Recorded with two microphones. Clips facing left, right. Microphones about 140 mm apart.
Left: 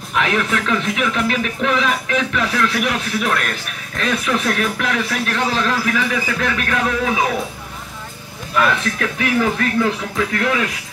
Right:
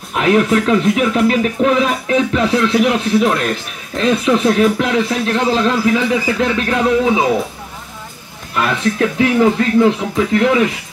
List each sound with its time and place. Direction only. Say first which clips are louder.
0.1 s speech: right 7 dB; 35° right (ahead or behind)
8.9 s speech: right 6 dB; 25° right (ahead or behind)